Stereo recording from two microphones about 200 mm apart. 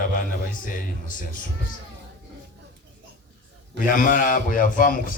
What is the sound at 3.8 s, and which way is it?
A man's voice, 45° left (ahead or behind).